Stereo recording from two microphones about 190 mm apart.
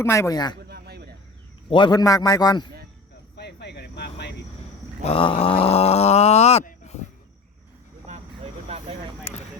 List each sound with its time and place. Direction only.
0.0 s speech: 15° left (ahead or behind)
0.7 s a sound: 55° right (ahead or behind)
1.7 s a man's voice: 25° left (ahead or behind)
3.3 s cricket: 60° left (ahead or behind)
5.0 s speech: 30° left (ahead or behind)